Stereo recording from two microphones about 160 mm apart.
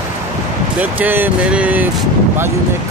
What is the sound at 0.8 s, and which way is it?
Speech, 10° right (ahead or behind).